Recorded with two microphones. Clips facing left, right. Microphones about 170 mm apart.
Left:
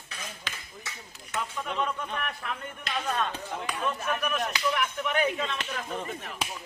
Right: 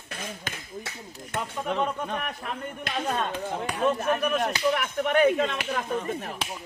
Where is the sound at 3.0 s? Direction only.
20° right (ahead or behind).